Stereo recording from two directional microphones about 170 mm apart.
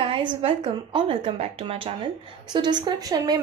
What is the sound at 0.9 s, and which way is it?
A woman's voice, 35° right (ahead or behind).